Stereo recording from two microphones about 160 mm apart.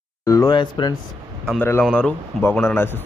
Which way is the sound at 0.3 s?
20° left (ahead or behind).